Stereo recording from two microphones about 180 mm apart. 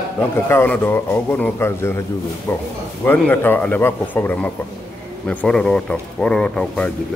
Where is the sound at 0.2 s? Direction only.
10° left (ahead or behind).